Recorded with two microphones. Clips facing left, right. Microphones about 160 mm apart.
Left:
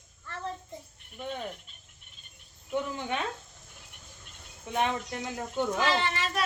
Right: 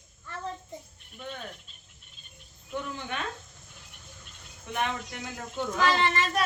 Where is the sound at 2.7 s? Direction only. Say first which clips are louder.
Left 3 dB; 20° left (ahead or behind).